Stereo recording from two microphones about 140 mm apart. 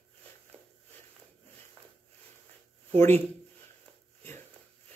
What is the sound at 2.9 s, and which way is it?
Speech, 15° left (ahead or behind).